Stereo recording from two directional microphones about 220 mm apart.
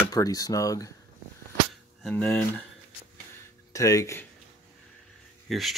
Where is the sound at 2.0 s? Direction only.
5° left (ahead or behind).